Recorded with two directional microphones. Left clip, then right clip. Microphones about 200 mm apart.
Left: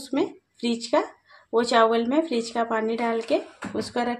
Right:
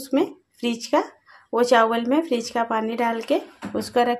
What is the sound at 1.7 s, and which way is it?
Speech, 30° right (ahead or behind).